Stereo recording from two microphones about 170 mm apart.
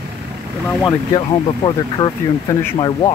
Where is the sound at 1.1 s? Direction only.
25° left (ahead or behind).